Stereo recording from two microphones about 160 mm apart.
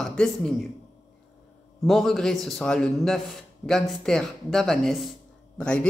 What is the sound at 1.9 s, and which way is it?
A man's voice, centre (ahead or behind).